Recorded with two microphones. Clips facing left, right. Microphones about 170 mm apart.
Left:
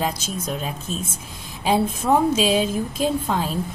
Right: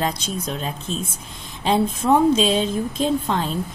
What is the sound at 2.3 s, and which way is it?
A woman's voice, 5° left (ahead or behind).